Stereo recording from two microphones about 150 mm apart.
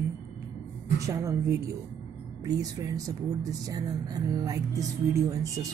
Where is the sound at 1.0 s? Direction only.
20° right (ahead or behind).